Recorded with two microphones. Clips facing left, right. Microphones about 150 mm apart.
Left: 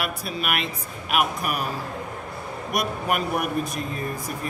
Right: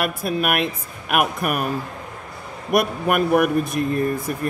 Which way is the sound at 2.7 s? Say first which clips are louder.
Right 6 dB; 55° right (ahead or behind).